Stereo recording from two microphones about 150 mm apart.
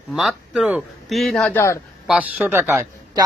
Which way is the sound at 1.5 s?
20° left (ahead or behind).